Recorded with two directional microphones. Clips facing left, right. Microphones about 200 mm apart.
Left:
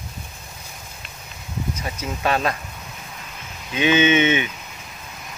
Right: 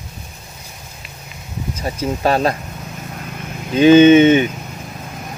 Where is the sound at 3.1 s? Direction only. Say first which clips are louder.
Right 9 dB; 50° right (ahead or behind).